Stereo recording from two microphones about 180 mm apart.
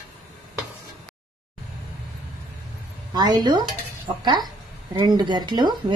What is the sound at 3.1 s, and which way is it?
Speech, 25° right (ahead or behind).